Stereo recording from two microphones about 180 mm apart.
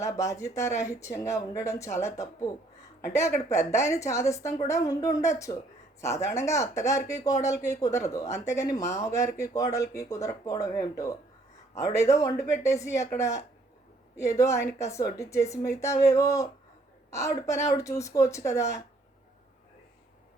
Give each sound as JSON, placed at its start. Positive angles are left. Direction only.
{"t": 0.0, "sound": "a woman's voice", "side_deg": 15}